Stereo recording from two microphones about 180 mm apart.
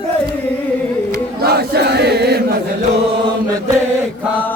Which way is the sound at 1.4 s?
65° right (ahead or behind).